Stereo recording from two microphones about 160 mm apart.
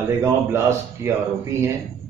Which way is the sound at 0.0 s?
15° right (ahead or behind).